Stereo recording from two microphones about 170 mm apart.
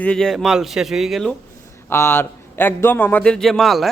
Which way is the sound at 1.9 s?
15° left (ahead or behind).